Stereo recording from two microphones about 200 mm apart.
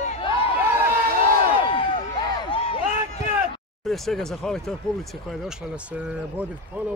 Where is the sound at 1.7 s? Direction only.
25° left (ahead or behind).